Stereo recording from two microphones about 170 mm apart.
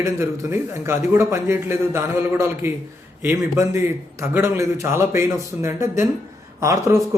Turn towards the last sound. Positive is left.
turn(degrees=-15)  # may be behind; listen again after turning